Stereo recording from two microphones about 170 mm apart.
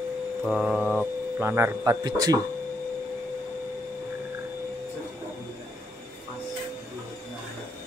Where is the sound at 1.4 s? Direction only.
15° right (ahead or behind).